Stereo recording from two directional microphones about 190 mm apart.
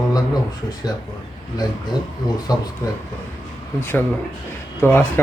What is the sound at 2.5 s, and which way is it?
Speech, 20° left (ahead or behind).